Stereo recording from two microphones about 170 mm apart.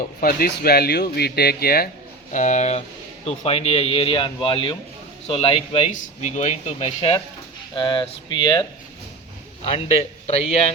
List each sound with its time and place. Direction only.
0.2 s speech: 60° left (ahead or behind)
2.3 s a man's voice: 45° left (ahead or behind)
5.9 s speech: 45° left (ahead or behind); by 8.6 s 25° left (ahead or behind)
9.6 s a man's voice: 35° left (ahead or behind)